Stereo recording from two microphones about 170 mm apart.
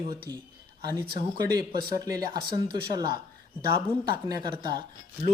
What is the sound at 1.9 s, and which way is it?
Speech, 20° right (ahead or behind).